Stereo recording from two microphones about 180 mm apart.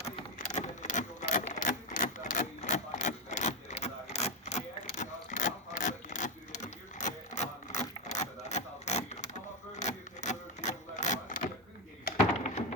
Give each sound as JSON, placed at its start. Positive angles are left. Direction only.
{"t": 0.0, "sound": "typewriter", "side_deg": 45}
{"t": 4.1, "sound": "wood", "side_deg": 40}
{"t": 9.7, "sound": "a sound", "side_deg": 40}